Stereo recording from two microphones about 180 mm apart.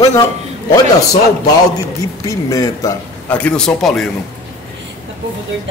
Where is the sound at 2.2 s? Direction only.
20° left (ahead or behind).